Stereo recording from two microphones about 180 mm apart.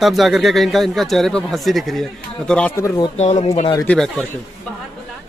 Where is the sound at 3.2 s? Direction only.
40° left (ahead or behind).